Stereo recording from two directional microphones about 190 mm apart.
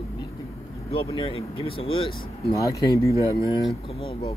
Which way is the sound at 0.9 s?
30° left (ahead or behind).